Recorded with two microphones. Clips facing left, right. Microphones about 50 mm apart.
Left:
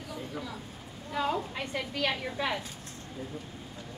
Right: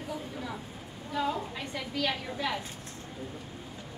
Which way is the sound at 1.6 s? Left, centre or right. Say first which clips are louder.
Left 1 dB; left.